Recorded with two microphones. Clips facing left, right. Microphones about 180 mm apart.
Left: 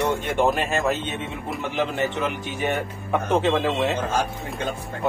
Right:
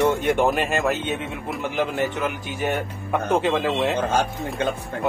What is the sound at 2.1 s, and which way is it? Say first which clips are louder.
A man's voice: even; centre (ahead or behind).